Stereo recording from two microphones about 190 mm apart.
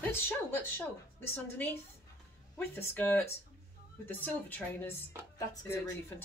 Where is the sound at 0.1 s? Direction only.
10° left (ahead or behind).